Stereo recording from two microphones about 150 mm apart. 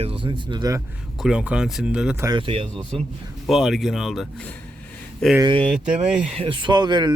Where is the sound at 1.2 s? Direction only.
5° right (ahead or behind).